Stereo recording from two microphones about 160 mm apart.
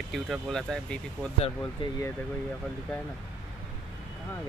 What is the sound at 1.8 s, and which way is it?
Speech, 35° left (ahead or behind).